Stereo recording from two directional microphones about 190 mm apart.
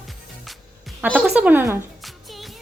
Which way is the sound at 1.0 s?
5° right (ahead or behind).